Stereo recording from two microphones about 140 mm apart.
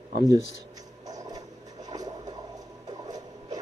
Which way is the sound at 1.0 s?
25° right (ahead or behind).